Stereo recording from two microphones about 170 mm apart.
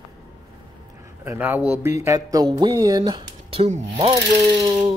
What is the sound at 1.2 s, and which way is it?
Music, 15° right (ahead or behind).